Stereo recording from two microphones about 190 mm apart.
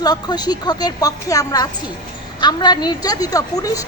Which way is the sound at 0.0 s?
20° left (ahead or behind).